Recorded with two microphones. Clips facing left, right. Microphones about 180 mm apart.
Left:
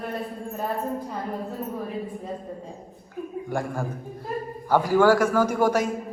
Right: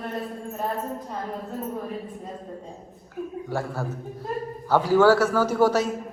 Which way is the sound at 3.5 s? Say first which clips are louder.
Left 1 dB; 15° left (ahead or behind).